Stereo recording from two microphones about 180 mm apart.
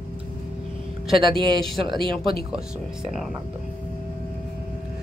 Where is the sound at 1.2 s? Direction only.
25° right (ahead or behind).